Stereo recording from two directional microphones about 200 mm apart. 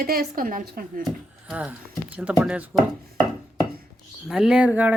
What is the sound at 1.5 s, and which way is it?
Speech, 5° right (ahead or behind).